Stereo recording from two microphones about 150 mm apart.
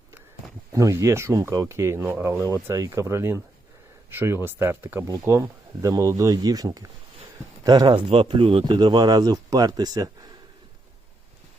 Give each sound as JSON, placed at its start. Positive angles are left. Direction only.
{"t": 0.7, "sound": "speech", "side_deg": -20}